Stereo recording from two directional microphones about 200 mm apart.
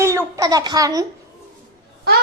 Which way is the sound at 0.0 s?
15° right (ahead or behind).